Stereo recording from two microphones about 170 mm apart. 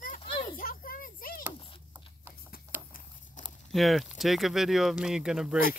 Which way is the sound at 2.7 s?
10° right (ahead or behind).